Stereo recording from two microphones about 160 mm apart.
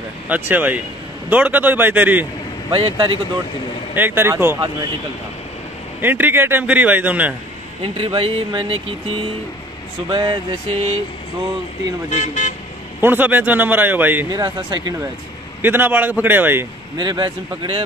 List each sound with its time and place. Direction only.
0.3 s a man's voice: 10° right (ahead or behind)
2.7 s speech: 35° right (ahead or behind)
3.9 s a man's voice: 15° right (ahead or behind)
5.9 s a man's voice: 10° right (ahead or behind)
7.8 s speech: 35° right (ahead or behind)
12.1 s speech: 50° left (ahead or behind)
13.0 s a man's voice: 10° right (ahead or behind)
14.3 s speech: 25° right (ahead or behind)
15.6 s a man's voice: 10° right (ahead or behind)
16.9 s speech: 30° right (ahead or behind)